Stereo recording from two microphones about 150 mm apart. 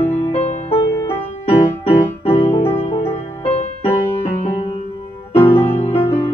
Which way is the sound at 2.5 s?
15° left (ahead or behind).